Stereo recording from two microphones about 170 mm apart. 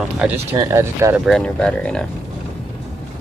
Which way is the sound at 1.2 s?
5° left (ahead or behind).